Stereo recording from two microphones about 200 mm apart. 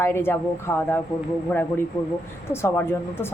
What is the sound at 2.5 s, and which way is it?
Speech, 10° left (ahead or behind).